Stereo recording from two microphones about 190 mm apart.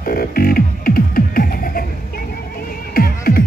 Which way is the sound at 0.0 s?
50° left (ahead or behind).